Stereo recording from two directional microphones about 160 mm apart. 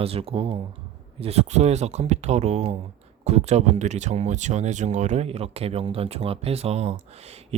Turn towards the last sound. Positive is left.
turn(degrees=-40)  # may be behind; listen again after turning